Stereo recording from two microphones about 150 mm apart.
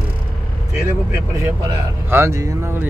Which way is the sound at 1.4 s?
20° right (ahead or behind).